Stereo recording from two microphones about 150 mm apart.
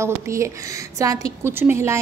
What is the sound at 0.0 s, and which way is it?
A woman's voice, 20° right (ahead or behind).